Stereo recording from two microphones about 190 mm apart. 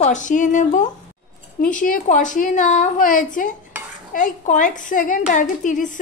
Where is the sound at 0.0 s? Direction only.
40° left (ahead or behind).